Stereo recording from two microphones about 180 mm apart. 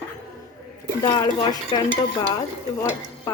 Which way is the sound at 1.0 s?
25° left (ahead or behind).